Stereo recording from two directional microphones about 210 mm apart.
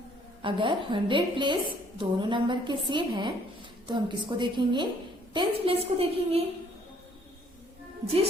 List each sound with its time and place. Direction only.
0.4 s a woman's voice: 25° right (ahead or behind)
8.0 s a woman's voice: 25° right (ahead or behind)